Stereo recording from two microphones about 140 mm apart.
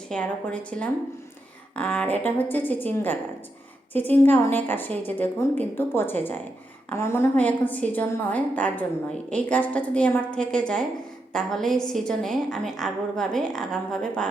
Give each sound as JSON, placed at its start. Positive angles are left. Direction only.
{"t": 0.1, "sound": "a woman's voice", "side_deg": 10}